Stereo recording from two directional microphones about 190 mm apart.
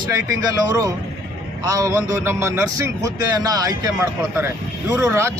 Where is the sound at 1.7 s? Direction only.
15° right (ahead or behind).